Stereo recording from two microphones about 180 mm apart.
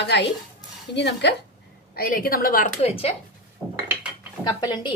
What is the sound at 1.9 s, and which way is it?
Speech, 55° left (ahead or behind).